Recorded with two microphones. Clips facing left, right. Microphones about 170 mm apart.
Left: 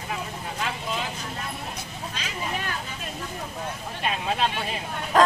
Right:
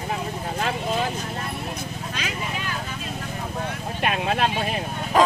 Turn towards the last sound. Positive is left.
turn(degrees=-5)  # may be behind; listen again after turning